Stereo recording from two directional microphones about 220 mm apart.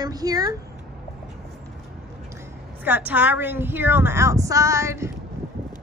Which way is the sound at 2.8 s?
10° right (ahead or behind).